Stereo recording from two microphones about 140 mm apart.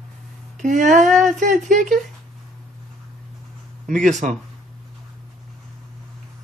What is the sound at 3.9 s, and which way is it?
Speech, 65° right (ahead or behind).